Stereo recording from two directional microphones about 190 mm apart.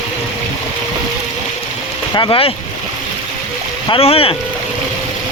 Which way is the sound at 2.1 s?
25° left (ahead or behind).